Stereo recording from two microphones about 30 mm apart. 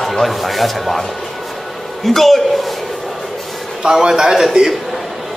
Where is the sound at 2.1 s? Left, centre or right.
Centre.